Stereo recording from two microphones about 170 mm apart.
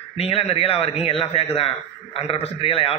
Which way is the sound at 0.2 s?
35° left (ahead or behind).